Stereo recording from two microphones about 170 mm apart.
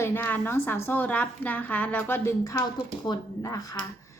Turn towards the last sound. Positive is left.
turn(degrees=20)  # may be behind; listen again after turning